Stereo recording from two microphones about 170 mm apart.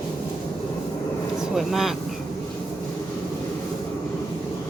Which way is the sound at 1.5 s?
Centre (ahead or behind).